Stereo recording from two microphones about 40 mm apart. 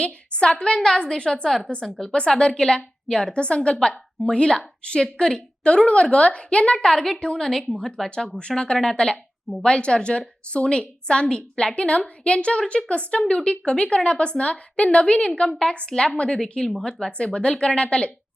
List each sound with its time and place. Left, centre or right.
0.0 s a woman's voice: left
2.1 s a woman's voice: left
6.7 s a woman's voice: centre
15.9 s a woman's voice: centre
16.1 s a woman's voice: left